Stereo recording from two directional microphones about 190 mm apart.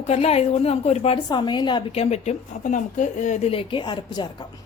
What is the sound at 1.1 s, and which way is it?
A woman's voice, 25° left (ahead or behind).